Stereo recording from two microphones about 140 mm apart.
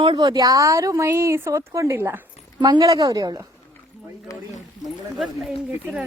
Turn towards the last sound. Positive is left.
turn(degrees=-10)  # may be behind; listen again after turning